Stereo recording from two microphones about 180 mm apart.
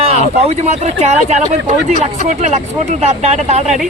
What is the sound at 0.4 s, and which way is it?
Speech, 40° right (ahead or behind).